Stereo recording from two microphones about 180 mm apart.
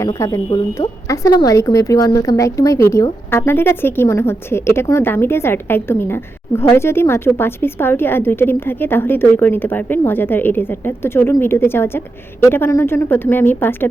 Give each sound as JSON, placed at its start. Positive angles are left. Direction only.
{"t": 0.0, "sound": "a woman's voice", "side_deg": 20}